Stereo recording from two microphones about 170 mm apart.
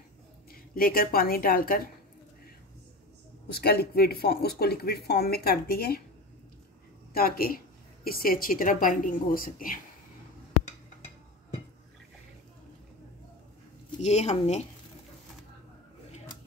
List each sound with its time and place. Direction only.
0.5 s a woman's voice: 60° left (ahead or behind)
3.4 s speech: 70° left (ahead or behind)
7.2 s speech: 60° left (ahead or behind)
14.0 s speech: 40° left (ahead or behind)